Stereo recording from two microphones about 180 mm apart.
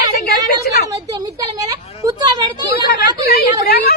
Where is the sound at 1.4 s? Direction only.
20° right (ahead or behind).